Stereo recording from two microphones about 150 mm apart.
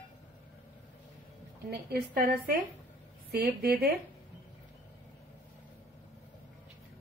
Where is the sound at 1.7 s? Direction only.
85° right.